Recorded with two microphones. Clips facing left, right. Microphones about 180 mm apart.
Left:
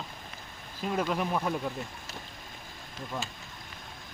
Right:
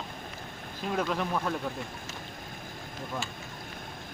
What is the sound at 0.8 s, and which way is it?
Speech, 5° left (ahead or behind).